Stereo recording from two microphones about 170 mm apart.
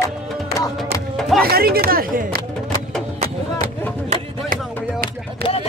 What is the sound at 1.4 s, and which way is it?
Speech, 60° right (ahead or behind).